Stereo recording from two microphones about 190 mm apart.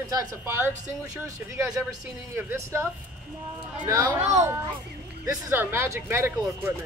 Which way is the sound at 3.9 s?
15° right (ahead or behind).